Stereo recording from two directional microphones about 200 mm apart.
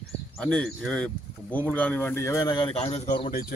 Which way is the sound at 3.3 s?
45° left (ahead or behind).